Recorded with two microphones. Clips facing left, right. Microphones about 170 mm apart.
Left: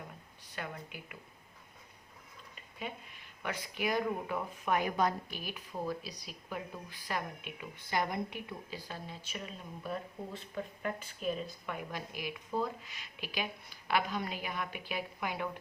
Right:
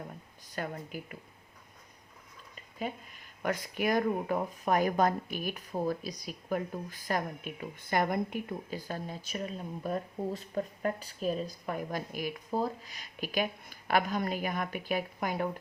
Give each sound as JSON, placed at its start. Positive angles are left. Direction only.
{"t": 0.5, "sound": "speech", "side_deg": -40}
{"t": 2.7, "sound": "speech", "side_deg": -40}